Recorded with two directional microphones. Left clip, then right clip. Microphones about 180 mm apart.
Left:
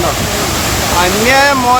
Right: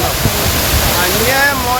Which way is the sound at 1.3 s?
40° left (ahead or behind).